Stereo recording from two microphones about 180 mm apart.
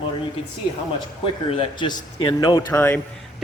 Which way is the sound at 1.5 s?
30° left (ahead or behind).